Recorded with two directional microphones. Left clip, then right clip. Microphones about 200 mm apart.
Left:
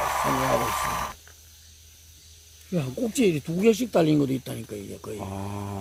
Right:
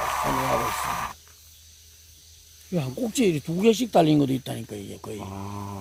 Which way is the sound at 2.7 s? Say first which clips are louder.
Even; 40° right (ahead or behind).